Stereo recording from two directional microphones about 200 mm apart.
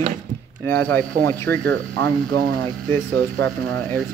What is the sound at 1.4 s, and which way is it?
Speech, 50° right (ahead or behind).